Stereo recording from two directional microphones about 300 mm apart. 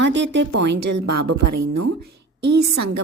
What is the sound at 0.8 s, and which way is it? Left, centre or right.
Speech, right.